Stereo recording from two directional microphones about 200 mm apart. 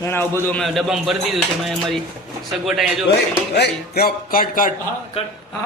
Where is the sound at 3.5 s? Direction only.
55° left (ahead or behind).